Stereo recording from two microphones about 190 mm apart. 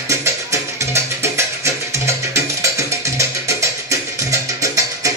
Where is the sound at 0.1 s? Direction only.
15° right (ahead or behind).